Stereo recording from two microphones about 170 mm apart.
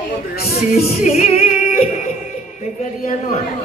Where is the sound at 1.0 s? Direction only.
40° left (ahead or behind).